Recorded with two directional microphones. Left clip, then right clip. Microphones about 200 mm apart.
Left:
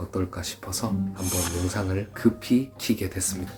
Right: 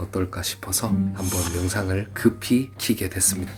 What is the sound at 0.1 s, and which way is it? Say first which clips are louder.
Speech: right 4 dB; 20° right (ahead or behind).